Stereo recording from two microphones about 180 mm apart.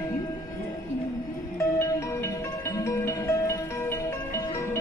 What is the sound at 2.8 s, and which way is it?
Music, 15° left (ahead or behind).